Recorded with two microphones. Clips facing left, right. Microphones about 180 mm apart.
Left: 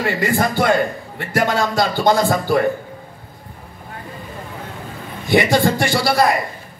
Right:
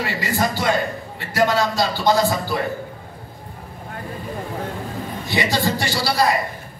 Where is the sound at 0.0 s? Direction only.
55° left (ahead or behind).